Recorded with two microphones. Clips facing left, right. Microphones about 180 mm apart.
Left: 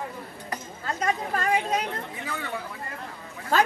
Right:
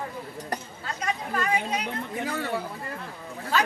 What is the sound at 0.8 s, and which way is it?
Chatter, 45° left (ahead or behind).